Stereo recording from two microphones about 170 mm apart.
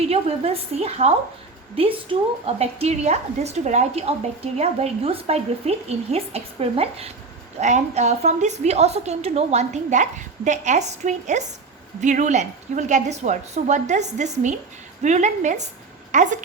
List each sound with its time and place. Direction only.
0.1 s a woman's voice: 35° right (ahead or behind)